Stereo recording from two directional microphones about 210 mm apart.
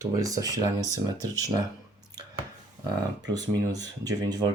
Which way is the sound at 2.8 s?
20° right (ahead or behind).